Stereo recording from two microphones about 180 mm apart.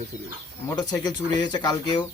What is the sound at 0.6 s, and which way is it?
Speech, 20° left (ahead or behind).